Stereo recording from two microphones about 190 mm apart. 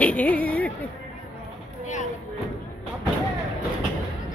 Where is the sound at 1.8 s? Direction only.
40° left (ahead or behind).